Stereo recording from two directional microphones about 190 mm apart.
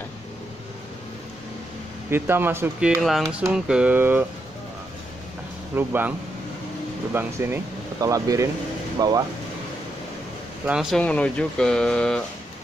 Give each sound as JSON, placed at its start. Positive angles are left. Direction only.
{"t": 2.0, "sound": "speech", "side_deg": -10}
{"t": 5.8, "sound": "speech", "side_deg": -10}
{"t": 10.7, "sound": "speech", "side_deg": 0}